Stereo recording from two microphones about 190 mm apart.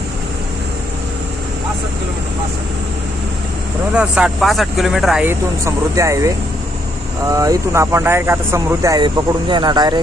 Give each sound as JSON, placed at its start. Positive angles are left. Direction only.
{"t": 3.9, "sound": "speech", "side_deg": -5}